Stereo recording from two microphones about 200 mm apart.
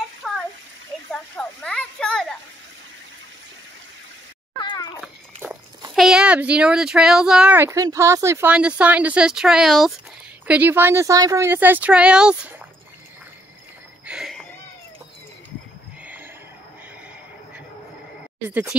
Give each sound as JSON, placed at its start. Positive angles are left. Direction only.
{"t": 0.2, "sound": "a sound", "side_deg": 0}
{"t": 4.6, "sound": "cat", "side_deg": 20}
{"t": 5.0, "sound": "cat", "side_deg": -5}
{"t": 5.9, "sound": "speech", "side_deg": -5}
{"t": 14.0, "sound": "a sound", "side_deg": 0}
{"t": 18.5, "sound": "speech", "side_deg": -10}